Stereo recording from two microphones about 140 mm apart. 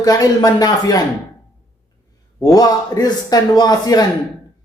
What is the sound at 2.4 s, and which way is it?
A man's voice, 25° left (ahead or behind).